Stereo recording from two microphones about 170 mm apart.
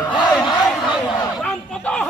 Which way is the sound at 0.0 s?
25° left (ahead or behind).